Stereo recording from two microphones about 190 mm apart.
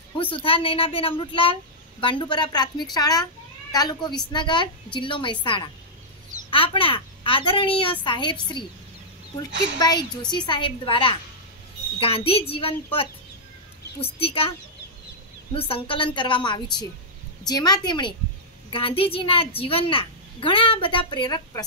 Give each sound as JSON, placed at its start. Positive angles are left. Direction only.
{"t": 0.2, "sound": "speech", "side_deg": 25}
{"t": 9.5, "sound": "speech", "side_deg": -65}
{"t": 9.8, "sound": "speech", "side_deg": 20}
{"t": 15.5, "sound": "speech", "side_deg": 30}